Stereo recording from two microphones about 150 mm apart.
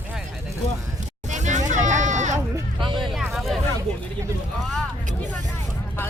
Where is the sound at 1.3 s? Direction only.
55° right (ahead or behind).